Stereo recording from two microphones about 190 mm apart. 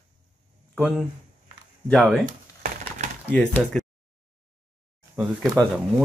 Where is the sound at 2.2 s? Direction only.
40° right (ahead or behind).